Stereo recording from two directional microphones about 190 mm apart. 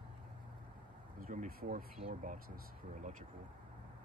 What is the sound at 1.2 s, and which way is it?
Speech, 45° right (ahead or behind).